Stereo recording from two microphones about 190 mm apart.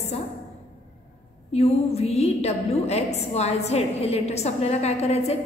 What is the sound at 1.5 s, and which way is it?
A woman's voice, 35° left (ahead or behind).